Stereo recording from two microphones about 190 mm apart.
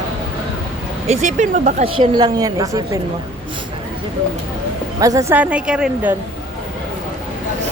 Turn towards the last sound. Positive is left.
turn(degrees=-5)  # may be behind; listen again after turning